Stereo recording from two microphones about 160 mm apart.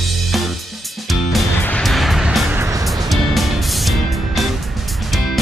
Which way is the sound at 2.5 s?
20° right (ahead or behind).